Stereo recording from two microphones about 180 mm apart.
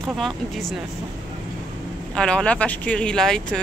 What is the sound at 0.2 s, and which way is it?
Speech, centre (ahead or behind).